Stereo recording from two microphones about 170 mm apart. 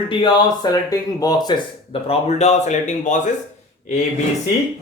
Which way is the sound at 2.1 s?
40° left (ahead or behind).